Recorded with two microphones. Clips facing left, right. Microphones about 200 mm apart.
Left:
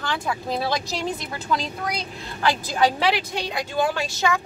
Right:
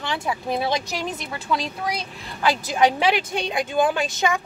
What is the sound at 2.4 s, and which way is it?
Speech, 20° right (ahead or behind).